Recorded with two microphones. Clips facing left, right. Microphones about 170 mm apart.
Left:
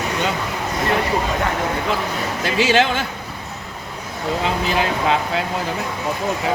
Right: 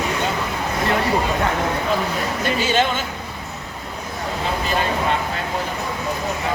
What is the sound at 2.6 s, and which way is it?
Speech, 80° left.